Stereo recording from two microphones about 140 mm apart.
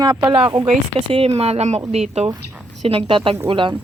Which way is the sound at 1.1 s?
45° right (ahead or behind).